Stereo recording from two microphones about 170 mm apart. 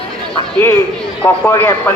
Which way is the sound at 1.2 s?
15° left (ahead or behind).